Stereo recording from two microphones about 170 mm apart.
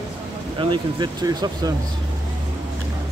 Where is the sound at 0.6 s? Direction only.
25° right (ahead or behind).